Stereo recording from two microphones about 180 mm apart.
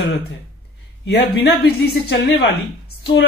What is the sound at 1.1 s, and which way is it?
Speech, 65° left (ahead or behind).